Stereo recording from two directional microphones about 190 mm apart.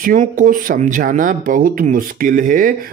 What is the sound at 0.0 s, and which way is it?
Speech, 45° right (ahead or behind).